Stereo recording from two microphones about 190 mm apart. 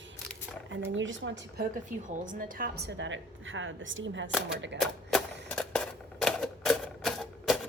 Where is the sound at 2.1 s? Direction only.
45° right (ahead or behind); by 4.3 s 75° right (ahead or behind).